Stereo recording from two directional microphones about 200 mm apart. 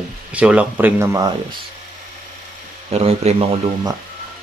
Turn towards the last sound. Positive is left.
turn(degrees=-30)  # may be behind; listen again after turning